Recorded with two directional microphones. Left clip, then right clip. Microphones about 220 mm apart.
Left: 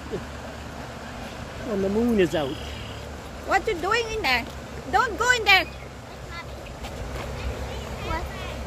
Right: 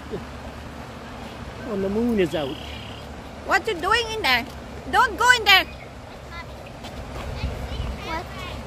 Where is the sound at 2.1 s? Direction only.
5° left (ahead or behind).